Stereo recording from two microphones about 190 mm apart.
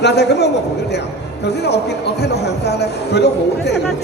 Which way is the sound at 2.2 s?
60° left (ahead or behind).